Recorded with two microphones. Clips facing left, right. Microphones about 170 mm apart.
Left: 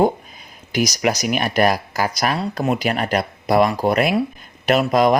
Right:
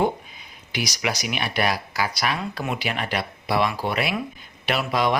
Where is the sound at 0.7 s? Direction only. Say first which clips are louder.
Left 8 dB; 45° left (ahead or behind).